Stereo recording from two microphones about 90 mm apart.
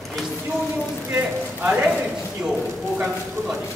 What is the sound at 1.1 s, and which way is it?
A man's voice, 15° right (ahead or behind).